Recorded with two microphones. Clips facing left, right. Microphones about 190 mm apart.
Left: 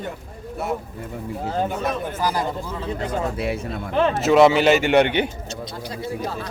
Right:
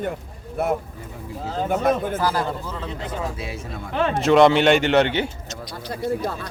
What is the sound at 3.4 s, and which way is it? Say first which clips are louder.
Speech: left 7 dB; 60° left (ahead or behind).